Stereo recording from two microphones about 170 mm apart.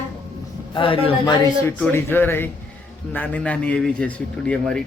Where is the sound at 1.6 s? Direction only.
10° left (ahead or behind).